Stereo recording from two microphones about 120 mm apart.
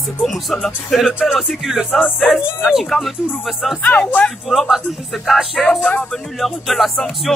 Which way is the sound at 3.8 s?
10° left (ahead or behind).